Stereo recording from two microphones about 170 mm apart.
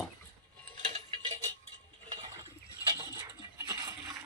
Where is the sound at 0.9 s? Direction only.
35° right (ahead or behind); by 4.2 s 20° right (ahead or behind).